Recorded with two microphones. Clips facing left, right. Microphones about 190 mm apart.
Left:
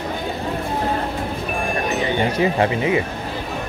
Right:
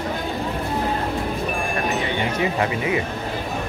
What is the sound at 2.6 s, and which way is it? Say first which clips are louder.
Speech: left 4 dB; 25° left (ahead or behind).